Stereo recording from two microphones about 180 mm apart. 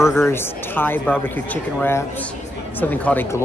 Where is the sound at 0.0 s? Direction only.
15° left (ahead or behind).